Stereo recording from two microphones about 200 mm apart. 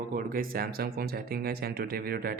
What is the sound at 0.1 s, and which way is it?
Speech, 45° right (ahead or behind).